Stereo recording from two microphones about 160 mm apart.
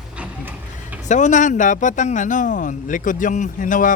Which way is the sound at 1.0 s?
50° left (ahead or behind).